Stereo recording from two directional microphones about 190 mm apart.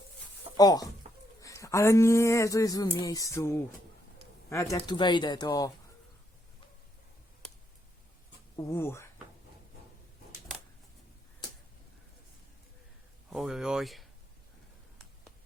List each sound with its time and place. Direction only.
0.5 s speech: 20° left (ahead or behind)
8.5 s speech: 15° left (ahead or behind)
13.3 s speech: centre (ahead or behind)